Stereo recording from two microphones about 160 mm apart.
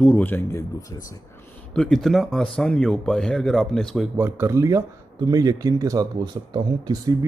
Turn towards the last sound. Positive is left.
turn(degrees=-25)  # may be behind; listen again after turning